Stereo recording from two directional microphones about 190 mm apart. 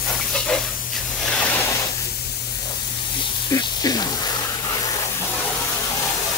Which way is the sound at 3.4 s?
20° left (ahead or behind).